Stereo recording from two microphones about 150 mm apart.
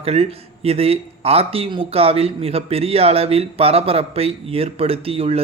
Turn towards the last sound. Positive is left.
turn(degrees=-40)  # may be behind; listen again after turning